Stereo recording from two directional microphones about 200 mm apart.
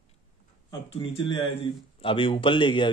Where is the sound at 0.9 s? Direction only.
25° left (ahead or behind).